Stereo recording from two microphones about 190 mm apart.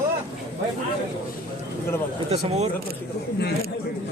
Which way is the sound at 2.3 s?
35° right (ahead or behind).